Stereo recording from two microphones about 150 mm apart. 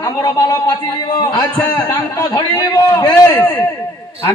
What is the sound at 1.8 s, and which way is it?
A man's voice, 25° left (ahead or behind).